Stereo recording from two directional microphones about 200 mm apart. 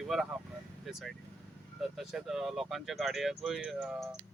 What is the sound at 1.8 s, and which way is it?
Speech, centre (ahead or behind).